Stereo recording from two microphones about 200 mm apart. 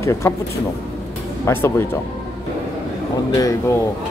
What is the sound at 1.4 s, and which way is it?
Speech, 15° left (ahead or behind).